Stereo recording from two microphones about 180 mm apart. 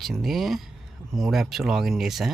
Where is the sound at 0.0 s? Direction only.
Centre (ahead or behind).